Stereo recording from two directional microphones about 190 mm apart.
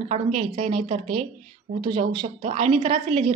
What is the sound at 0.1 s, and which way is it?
A woman's voice, 30° right (ahead or behind).